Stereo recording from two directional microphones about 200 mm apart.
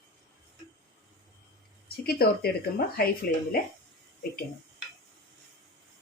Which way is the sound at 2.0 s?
50° left (ahead or behind).